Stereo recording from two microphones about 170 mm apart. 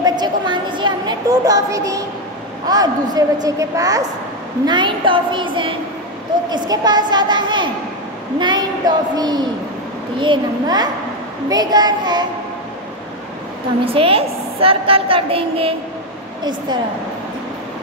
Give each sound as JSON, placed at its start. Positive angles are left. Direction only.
{"t": 0.0, "sound": "a sound", "side_deg": -25}
{"t": 2.7, "sound": "a woman's voice", "side_deg": -20}
{"t": 13.8, "sound": "a woman's voice", "side_deg": -35}